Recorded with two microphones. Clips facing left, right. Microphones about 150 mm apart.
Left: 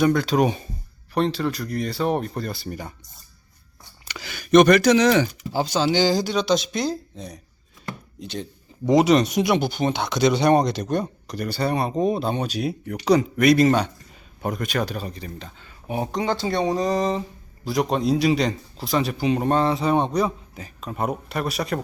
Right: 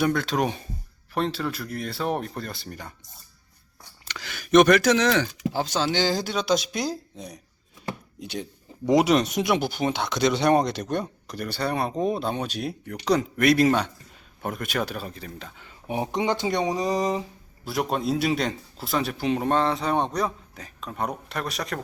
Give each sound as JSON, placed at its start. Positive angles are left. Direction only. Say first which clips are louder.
{"t": 0.0, "sound": "speech", "louder": "left 5 dB", "side_deg": 0}
{"t": 4.1, "sound": "speech", "louder": "left 2 dB", "side_deg": 5}
{"t": 5.0, "sound": "speech", "louder": "left 4 dB", "side_deg": 10}
{"t": 15.5, "sound": "speech", "louder": "left 1 dB", "side_deg": -20}